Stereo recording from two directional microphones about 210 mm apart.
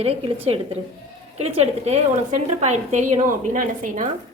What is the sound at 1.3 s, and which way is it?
A woman's voice, 30° right (ahead or behind).